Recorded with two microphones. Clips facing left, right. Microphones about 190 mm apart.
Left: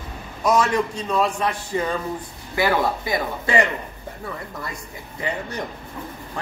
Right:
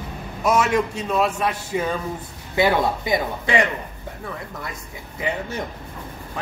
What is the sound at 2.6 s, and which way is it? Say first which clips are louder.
Speech: right 2 dB; 20° right (ahead or behind).